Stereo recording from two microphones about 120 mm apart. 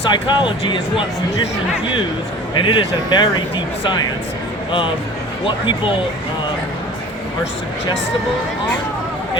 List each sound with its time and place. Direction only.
0.1 s speech: 40° left (ahead or behind)
2.6 s speech: 40° left (ahead or behind)
5.5 s speech: 40° left (ahead or behind)